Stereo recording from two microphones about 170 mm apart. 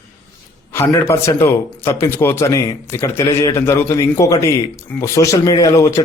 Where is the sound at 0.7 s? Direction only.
15° left (ahead or behind).